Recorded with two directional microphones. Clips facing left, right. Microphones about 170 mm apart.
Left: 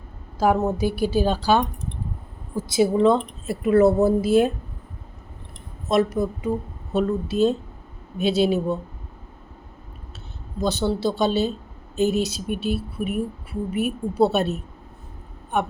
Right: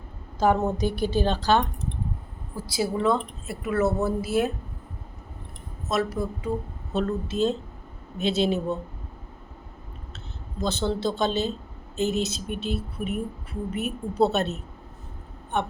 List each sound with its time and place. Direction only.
0.3 s speech: 5° left (ahead or behind)
2.6 s speech: 20° left (ahead or behind)
6.2 s speech: 25° left (ahead or behind)
10.6 s speech: 10° left (ahead or behind)